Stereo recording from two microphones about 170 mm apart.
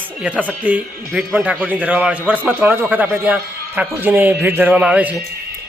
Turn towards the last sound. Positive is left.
turn(degrees=-10)  # may be behind; listen again after turning